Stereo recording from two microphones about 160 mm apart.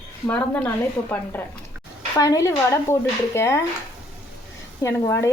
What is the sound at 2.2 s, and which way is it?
Speech, 20° left (ahead or behind).